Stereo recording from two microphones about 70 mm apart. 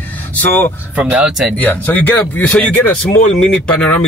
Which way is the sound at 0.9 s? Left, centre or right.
Centre.